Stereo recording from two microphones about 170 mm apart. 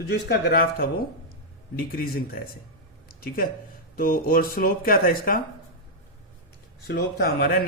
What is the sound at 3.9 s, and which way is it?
A man's voice, 60° left (ahead or behind).